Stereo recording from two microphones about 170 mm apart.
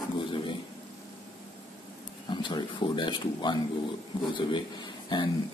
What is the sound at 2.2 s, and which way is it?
Speech, 25° left (ahead or behind).